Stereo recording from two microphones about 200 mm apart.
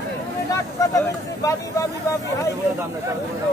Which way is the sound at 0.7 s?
15° left (ahead or behind).